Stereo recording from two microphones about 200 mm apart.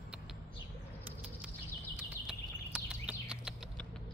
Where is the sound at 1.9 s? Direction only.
5° right (ahead or behind).